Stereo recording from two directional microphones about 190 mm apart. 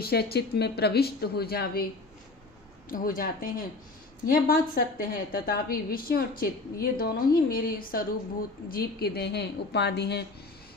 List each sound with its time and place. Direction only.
0.0 s a woman's voice: 55° left (ahead or behind)
2.9 s a woman's voice: 45° left (ahead or behind)